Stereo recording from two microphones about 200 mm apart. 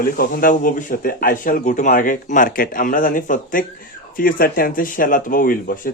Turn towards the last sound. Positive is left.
turn(degrees=45)  # may be behind; listen again after turning